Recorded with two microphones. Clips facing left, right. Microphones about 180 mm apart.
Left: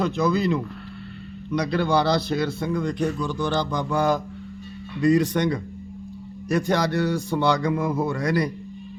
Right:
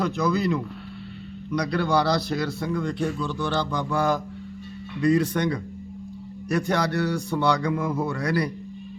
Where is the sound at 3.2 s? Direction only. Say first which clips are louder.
Left 2 dB; 15° left (ahead or behind).